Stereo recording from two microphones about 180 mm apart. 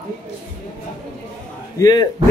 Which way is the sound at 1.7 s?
20° left (ahead or behind).